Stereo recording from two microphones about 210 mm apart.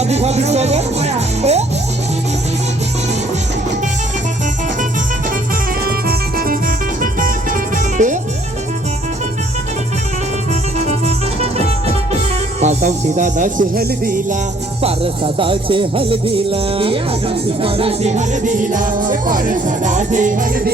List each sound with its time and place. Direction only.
0.0 s speech: 30° right (ahead or behind)
5.8 s music: 45° right (ahead or behind)
10.8 s music: 30° right (ahead or behind)
12.5 s speech: 35° right (ahead or behind)
14.8 s speech: 25° right (ahead or behind)